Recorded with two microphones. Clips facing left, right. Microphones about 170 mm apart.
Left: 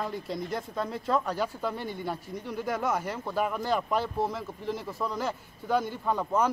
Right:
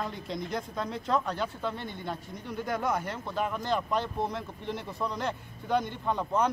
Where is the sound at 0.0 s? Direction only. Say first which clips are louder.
Left 2 dB; 5° left (ahead or behind).